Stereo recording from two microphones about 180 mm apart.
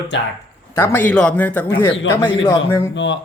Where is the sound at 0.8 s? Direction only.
10° left (ahead or behind).